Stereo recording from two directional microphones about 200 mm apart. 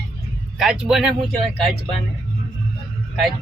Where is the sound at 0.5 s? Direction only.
5° right (ahead or behind).